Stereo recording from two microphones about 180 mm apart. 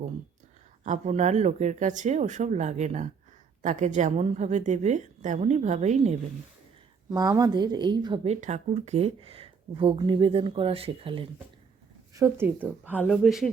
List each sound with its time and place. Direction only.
0.9 s a woman's voice: 40° right (ahead or behind)
7.1 s speech: 20° right (ahead or behind)
12.1 s speech: 15° right (ahead or behind)
13.0 s speech: centre (ahead or behind)